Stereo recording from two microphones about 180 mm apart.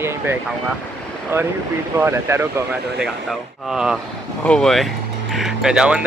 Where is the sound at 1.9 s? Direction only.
15° right (ahead or behind).